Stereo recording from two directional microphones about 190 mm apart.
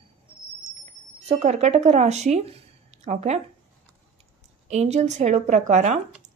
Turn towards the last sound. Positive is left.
turn(degrees=-40)  # may be behind; listen again after turning